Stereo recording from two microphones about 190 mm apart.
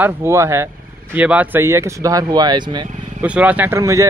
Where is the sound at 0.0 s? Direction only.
15° right (ahead or behind).